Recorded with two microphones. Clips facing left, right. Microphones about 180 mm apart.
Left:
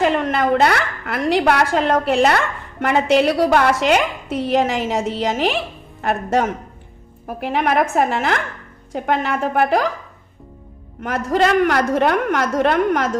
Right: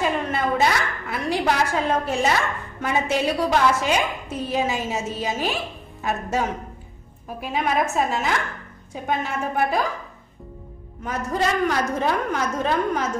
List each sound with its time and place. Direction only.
0.0 s a woman's voice: 70° left (ahead or behind)
8.9 s a woman's voice: 70° left (ahead or behind)
11.0 s a woman's voice: 80° left